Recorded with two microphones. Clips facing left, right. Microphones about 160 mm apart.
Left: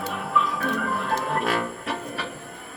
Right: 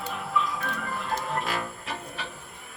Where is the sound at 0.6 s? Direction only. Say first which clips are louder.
Left 7 dB; 65° left (ahead or behind).